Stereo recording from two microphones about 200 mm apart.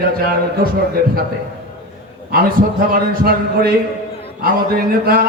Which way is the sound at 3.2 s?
50° right (ahead or behind).